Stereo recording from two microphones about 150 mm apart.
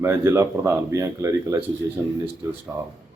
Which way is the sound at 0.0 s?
15° right (ahead or behind).